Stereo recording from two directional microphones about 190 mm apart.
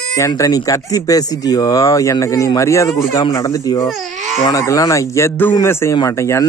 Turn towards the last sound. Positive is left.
turn(degrees=15)  # may be behind; listen again after turning